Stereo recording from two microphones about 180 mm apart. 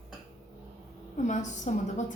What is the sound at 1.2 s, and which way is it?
Speech, 40° left (ahead or behind).